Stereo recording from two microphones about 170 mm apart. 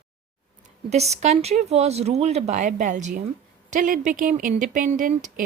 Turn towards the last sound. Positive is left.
turn(degrees=-50)  # may be behind; listen again after turning